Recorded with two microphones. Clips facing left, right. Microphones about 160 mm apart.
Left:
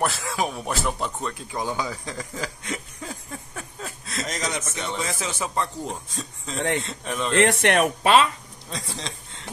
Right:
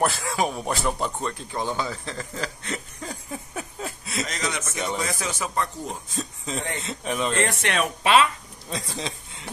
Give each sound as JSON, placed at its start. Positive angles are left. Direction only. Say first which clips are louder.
{"t": 0.0, "sound": "speech", "louder": "right 2 dB", "side_deg": 0}
{"t": 1.6, "sound": "speech", "louder": "even", "side_deg": 10}
{"t": 4.4, "sound": "a man's voice", "louder": "left 1 dB", "side_deg": 35}
{"t": 4.7, "sound": "a man's voice", "louder": "right 2 dB", "side_deg": -10}
{"t": 5.0, "sound": "a man's voice", "louder": "even", "side_deg": 20}
{"t": 5.9, "sound": "speech", "louder": "right 1 dB", "side_deg": 0}
{"t": 7.3, "sound": "speech", "louder": "left 5 dB", "side_deg": 60}
{"t": 8.6, "sound": "a sound", "louder": "right 3 dB", "side_deg": -5}